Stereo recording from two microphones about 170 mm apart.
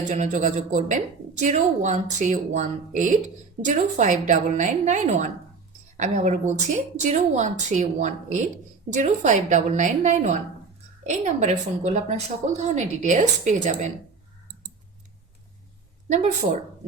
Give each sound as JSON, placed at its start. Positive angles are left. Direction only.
{"t": 0.1, "sound": "a woman's voice", "side_deg": -45}
{"t": 16.0, "sound": "a woman's voice", "side_deg": -45}